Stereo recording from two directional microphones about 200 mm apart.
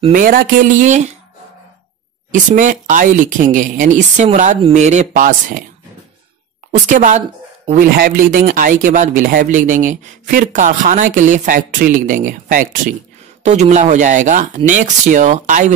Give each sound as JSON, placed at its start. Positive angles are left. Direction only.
{"t": 0.1, "sound": "speech", "side_deg": -45}
{"t": 2.3, "sound": "speech", "side_deg": -40}
{"t": 6.9, "sound": "speech", "side_deg": -40}